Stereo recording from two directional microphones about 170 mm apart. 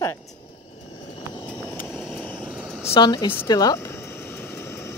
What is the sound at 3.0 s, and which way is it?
Speech, 25° left (ahead or behind).